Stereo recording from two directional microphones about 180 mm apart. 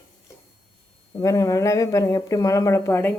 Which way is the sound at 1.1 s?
20° left (ahead or behind).